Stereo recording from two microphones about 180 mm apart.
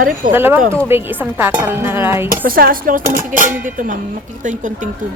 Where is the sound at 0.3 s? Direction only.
10° right (ahead or behind).